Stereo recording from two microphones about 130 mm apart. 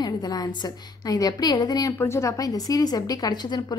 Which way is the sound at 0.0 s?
30° left (ahead or behind).